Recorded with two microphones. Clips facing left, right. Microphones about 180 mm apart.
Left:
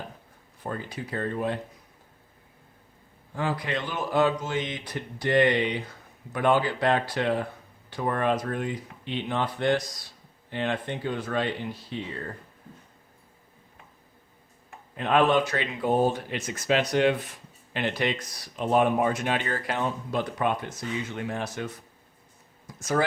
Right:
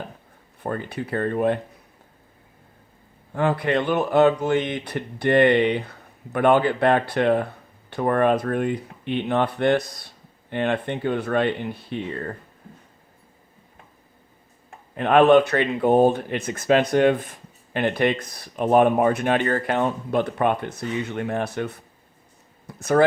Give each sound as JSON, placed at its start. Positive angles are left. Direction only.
{"t": 0.6, "sound": "speech", "side_deg": -60}
{"t": 3.3, "sound": "speech", "side_deg": -60}
{"t": 14.9, "sound": "speech", "side_deg": -55}
{"t": 22.6, "sound": "a sound", "side_deg": -60}